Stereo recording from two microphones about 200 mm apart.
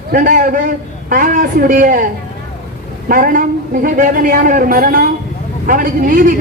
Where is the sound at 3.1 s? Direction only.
45° right (ahead or behind).